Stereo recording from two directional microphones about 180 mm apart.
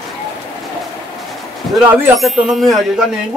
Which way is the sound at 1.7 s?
10° right (ahead or behind).